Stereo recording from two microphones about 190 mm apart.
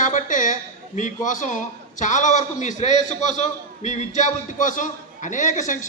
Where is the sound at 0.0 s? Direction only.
40° left (ahead or behind).